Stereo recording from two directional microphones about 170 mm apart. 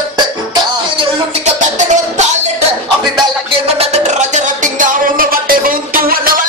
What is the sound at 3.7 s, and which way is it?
Music, 40° right (ahead or behind).